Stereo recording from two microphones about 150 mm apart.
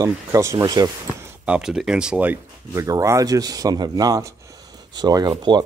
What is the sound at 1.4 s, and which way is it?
Speech, 5° right (ahead or behind).